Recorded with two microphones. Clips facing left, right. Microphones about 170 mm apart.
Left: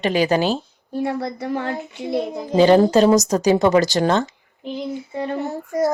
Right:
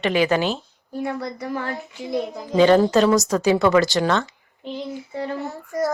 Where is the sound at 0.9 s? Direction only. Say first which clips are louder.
Left 3 dB; 25° left (ahead or behind).